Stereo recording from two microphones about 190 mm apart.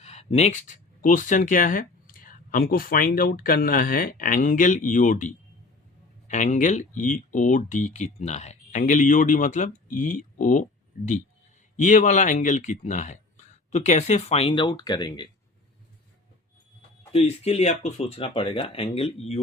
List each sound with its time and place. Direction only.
0.0 s speech: 35° left (ahead or behind)
17.1 s speech: 30° left (ahead or behind)